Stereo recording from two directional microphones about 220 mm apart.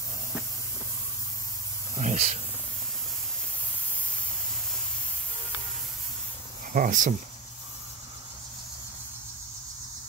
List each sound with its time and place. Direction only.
2.0 s cricket: 30° right (ahead or behind)
6.7 s cricket: 35° right (ahead or behind)